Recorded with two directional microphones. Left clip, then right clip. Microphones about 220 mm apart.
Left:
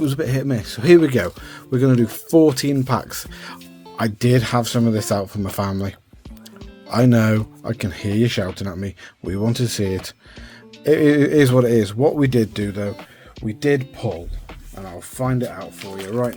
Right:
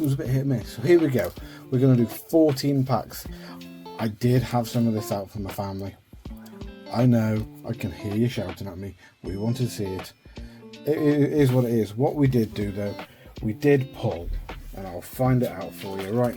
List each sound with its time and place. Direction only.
0.1 s speech: 40° left (ahead or behind)
6.9 s speech: 40° left (ahead or behind)
13.5 s speech: 20° left (ahead or behind)
14.8 s speech: 5° left (ahead or behind)